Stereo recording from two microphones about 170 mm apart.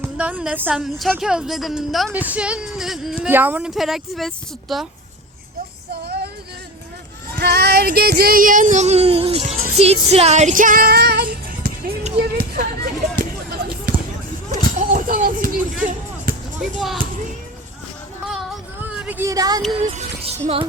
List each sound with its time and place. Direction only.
0.0 s a woman's voice: 10° right (ahead or behind)
7.3 s speech: 75° right (ahead or behind)
14.5 s a sound: 50° right (ahead or behind)
16.6 s speech: centre (ahead or behind)
18.3 s a sound: 5° right (ahead or behind); by 19.6 s 20° right (ahead or behind)
19.8 s music: 40° right (ahead or behind)